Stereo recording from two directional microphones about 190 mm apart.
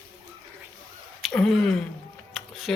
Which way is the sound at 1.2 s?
Centre (ahead or behind).